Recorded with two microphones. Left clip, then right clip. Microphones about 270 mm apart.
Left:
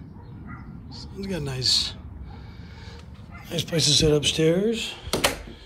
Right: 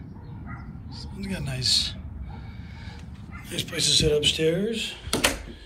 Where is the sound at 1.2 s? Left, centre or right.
Centre.